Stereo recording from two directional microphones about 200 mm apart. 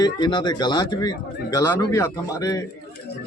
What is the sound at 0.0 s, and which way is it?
Speech, 20° left (ahead or behind).